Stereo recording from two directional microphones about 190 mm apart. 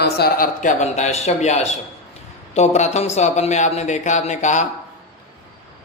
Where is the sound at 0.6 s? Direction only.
35° left (ahead or behind).